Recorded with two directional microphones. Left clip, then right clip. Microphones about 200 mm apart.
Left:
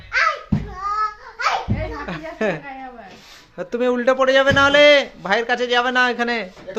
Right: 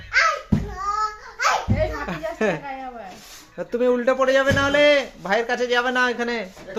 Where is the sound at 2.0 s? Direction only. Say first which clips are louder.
Even; centre (ahead or behind).